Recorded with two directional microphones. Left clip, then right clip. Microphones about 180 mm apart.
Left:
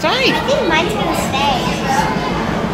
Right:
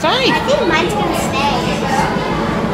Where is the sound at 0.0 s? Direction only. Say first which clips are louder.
Right 1 dB; 5° right (ahead or behind).